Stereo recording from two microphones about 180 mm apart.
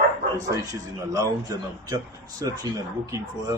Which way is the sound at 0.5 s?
15° right (ahead or behind).